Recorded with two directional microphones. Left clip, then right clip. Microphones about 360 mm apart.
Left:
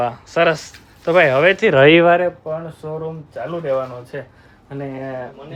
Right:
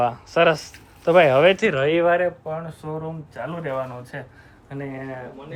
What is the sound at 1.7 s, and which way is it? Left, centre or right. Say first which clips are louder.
Speech: left 8 dB; left.